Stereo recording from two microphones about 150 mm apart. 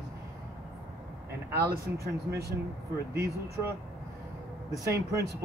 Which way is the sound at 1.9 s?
90° right.